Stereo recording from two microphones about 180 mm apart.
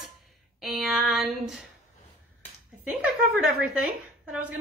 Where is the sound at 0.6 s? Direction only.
Centre (ahead or behind).